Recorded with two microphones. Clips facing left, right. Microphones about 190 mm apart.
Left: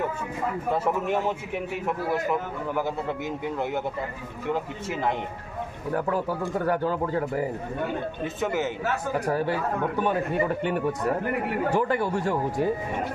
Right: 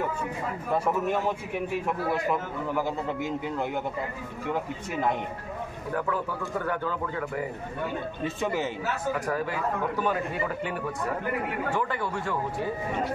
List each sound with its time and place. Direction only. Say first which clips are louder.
6.0 s speech: left 4 dB; 40° left (ahead or behind)
8.4 s a man's voice: left 2 dB; 5° left (ahead or behind)
9.2 s speech: left 4 dB; 30° left (ahead or behind)
11.7 s speech: left 7 dB; 40° left (ahead or behind)